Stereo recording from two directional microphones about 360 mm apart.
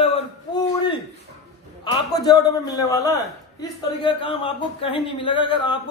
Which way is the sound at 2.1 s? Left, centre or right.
Centre.